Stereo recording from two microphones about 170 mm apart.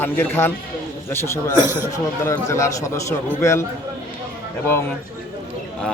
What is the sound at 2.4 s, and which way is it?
A man's voice, 20° left (ahead or behind).